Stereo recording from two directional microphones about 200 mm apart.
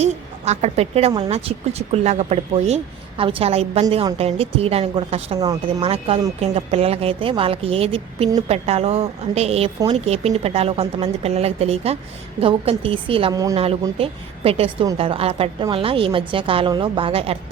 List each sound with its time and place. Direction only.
0.0 s a woman's voice: 35° right (ahead or behind)
5.4 s a woman's voice: 20° right (ahead or behind)
14.0 s a woman's voice: 30° right (ahead or behind)